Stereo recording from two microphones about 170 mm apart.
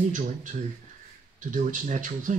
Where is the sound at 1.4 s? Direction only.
50° right (ahead or behind).